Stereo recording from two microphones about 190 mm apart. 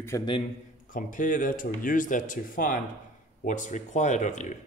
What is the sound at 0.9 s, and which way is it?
Speech, 45° left (ahead or behind).